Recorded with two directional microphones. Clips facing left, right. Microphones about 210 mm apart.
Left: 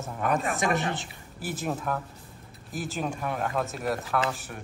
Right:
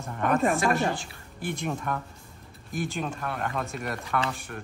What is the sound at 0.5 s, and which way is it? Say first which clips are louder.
Speech: right 2 dB; 20° left (ahead or behind).